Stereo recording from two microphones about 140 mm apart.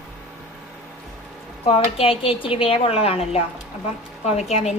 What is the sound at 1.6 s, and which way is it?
A woman's voice, 45° left (ahead or behind).